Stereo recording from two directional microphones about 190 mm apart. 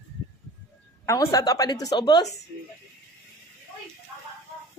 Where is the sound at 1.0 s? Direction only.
15° left (ahead or behind).